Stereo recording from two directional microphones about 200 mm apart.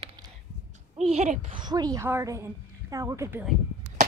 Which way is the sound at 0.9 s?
35° right (ahead or behind).